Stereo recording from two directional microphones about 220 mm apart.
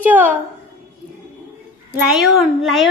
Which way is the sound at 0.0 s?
5° right (ahead or behind).